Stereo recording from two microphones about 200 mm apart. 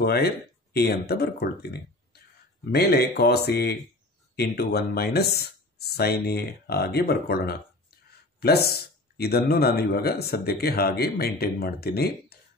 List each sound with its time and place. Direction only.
0.0 s speech: 50° left (ahead or behind)